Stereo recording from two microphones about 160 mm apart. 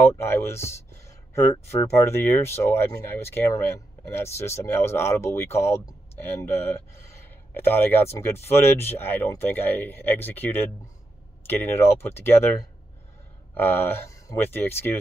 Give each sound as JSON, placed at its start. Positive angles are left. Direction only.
{"t": 0.0, "sound": "speech", "side_deg": 15}
{"t": 13.6, "sound": "speech", "side_deg": 15}